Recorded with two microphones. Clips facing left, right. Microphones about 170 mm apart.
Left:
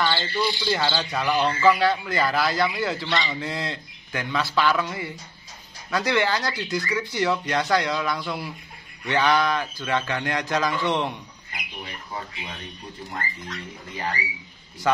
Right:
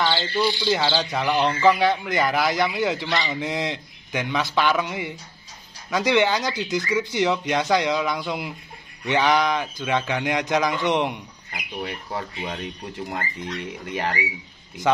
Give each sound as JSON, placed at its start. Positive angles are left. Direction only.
{"t": 0.0, "sound": "speech", "side_deg": -20}
{"t": 11.8, "sound": "speech", "side_deg": -55}
{"t": 13.6, "sound": "speech", "side_deg": -90}